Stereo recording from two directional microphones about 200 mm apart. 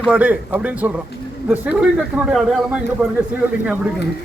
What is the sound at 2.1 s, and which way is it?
Speech, 5° right (ahead or behind).